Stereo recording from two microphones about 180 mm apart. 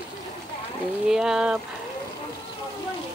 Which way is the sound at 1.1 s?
5° right (ahead or behind).